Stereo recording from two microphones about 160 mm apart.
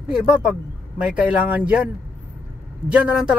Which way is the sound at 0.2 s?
5° right (ahead or behind).